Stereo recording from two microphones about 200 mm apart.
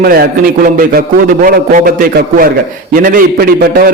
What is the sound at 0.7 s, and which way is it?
A man's voice, 45° right (ahead or behind).